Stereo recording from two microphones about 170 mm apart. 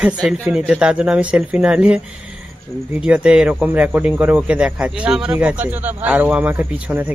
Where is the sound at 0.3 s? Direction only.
5° right (ahead or behind).